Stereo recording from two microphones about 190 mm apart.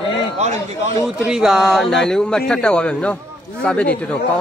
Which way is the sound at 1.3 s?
Centre (ahead or behind).